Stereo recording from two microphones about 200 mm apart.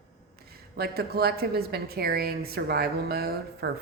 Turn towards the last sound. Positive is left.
turn(degrees=-50)  # may be behind; listen again after turning